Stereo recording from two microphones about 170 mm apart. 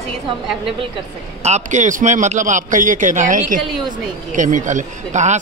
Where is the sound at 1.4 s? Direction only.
45° right (ahead or behind).